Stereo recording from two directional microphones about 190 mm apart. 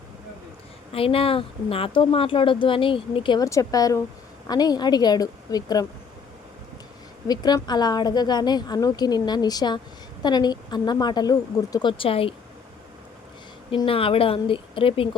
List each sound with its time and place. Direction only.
0.9 s speech: 30° left (ahead or behind)
7.3 s speech: 20° left (ahead or behind)
13.7 s speech: 30° left (ahead or behind)